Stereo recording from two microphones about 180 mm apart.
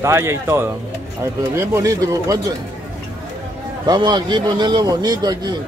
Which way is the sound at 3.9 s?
25° right (ahead or behind).